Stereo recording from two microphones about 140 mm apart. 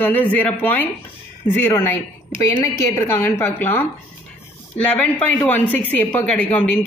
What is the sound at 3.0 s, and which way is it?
A man's voice, 15° left (ahead or behind).